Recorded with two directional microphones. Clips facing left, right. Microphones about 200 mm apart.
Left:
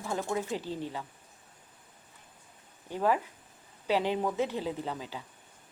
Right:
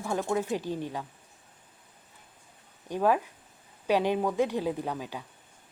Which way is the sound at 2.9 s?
15° right (ahead or behind).